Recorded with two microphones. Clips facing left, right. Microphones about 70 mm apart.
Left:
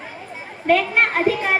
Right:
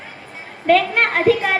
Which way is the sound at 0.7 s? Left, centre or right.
Right.